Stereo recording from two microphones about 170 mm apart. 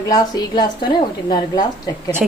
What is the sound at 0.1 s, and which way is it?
A woman's voice, 20° left (ahead or behind).